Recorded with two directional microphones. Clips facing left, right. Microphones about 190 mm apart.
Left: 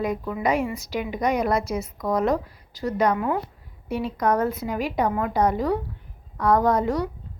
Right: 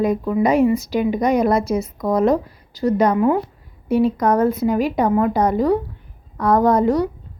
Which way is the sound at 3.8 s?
40° right (ahead or behind).